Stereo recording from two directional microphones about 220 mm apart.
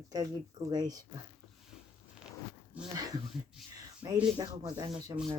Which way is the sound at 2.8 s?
5° right (ahead or behind).